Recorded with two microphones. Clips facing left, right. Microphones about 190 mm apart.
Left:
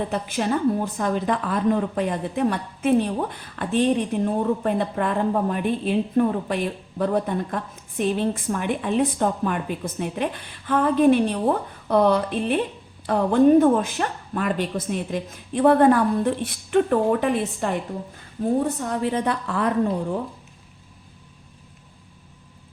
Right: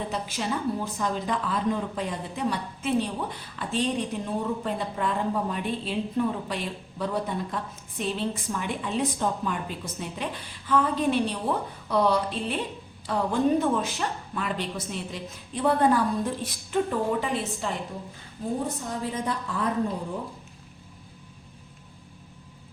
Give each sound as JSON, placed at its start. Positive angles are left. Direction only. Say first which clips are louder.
{"t": 0.1, "sound": "a woman's voice", "louder": "left 6 dB", "side_deg": 55}